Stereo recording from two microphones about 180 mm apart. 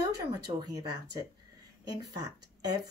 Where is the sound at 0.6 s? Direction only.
20° right (ahead or behind).